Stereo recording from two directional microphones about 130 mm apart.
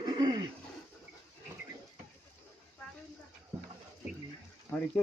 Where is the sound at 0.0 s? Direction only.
30° right (ahead or behind).